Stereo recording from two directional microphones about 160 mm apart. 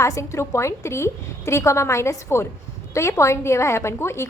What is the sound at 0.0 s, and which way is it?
A woman's voice, 20° left (ahead or behind).